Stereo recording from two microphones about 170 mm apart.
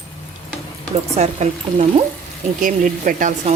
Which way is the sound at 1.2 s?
45° right (ahead or behind).